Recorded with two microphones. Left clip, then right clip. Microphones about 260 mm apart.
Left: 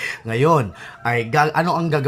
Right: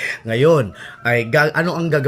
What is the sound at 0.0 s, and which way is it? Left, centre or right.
Speech, centre.